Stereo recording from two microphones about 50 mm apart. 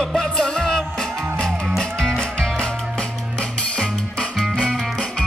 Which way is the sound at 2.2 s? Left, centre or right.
Centre.